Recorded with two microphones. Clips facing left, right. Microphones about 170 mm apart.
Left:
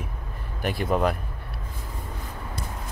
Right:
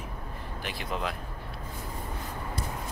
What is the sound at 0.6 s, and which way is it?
Speech, 50° left (ahead or behind).